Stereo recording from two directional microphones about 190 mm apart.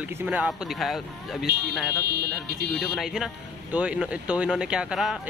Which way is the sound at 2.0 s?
55° right (ahead or behind).